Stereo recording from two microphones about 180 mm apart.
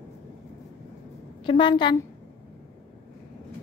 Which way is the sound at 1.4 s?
25° left (ahead or behind).